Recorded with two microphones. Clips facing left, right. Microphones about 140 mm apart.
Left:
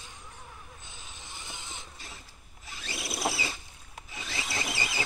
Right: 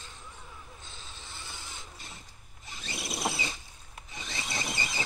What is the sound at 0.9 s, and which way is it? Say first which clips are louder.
Mechanisms: even; 15° left (ahead or behind).